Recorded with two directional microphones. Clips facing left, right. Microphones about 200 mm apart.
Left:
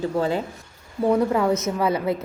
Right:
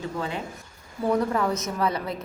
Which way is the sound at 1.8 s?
25° left (ahead or behind).